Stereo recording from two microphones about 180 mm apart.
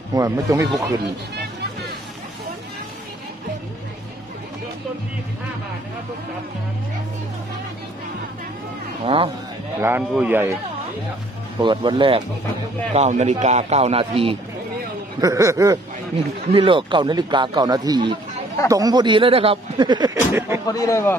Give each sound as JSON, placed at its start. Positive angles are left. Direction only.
{"t": 0.1, "sound": "speech", "side_deg": -20}
{"t": 1.3, "sound": "music", "side_deg": -65}
{"t": 9.0, "sound": "speech", "side_deg": -30}
{"t": 9.8, "sound": "a man's voice", "side_deg": -10}
{"t": 11.6, "sound": "speech", "side_deg": -25}
{"t": 12.9, "sound": "speech", "side_deg": -40}
{"t": 15.1, "sound": "speech", "side_deg": -20}
{"t": 20.2, "sound": "a sound", "side_deg": -15}
{"t": 20.6, "sound": "speech", "side_deg": 20}